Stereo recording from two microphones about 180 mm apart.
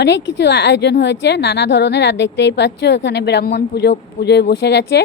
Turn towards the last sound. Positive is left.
turn(degrees=70)  # may be behind; listen again after turning